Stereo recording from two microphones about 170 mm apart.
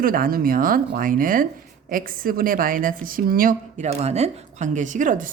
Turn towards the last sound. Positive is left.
turn(degrees=-50)  # may be behind; listen again after turning